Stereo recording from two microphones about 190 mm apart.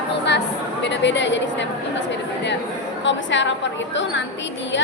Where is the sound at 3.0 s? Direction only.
75° left (ahead or behind).